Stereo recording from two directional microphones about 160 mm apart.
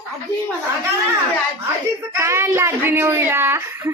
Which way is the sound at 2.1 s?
15° right (ahead or behind).